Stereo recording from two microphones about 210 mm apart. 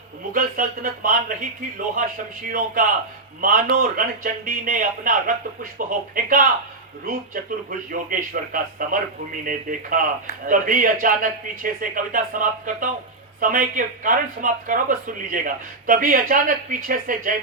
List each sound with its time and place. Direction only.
0.3 s a man's voice: 40° right (ahead or behind)
2.5 s a man's voice: 40° right (ahead or behind)